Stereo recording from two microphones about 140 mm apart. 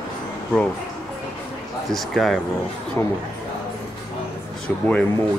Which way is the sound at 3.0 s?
20° left (ahead or behind).